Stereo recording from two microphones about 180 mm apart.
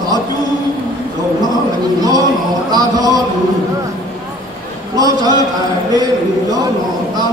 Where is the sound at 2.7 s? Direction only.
20° right (ahead or behind).